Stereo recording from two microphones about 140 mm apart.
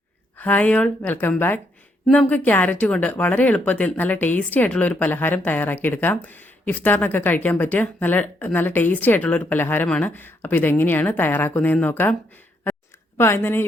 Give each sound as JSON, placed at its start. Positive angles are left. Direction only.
{"t": 0.3, "sound": "speech", "side_deg": 10}
{"t": 13.1, "sound": "speech", "side_deg": 15}